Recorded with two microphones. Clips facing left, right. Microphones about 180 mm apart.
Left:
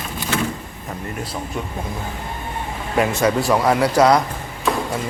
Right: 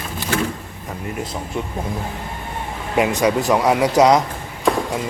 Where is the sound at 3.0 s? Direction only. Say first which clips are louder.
Right 1 dB; 15° right (ahead or behind).